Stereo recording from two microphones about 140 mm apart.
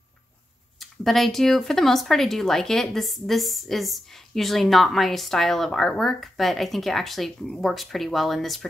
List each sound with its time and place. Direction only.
0.7 s speech: centre (ahead or behind)